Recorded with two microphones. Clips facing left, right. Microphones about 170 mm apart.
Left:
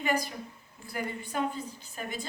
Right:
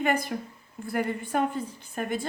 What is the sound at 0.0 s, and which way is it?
Speech, 55° right (ahead or behind).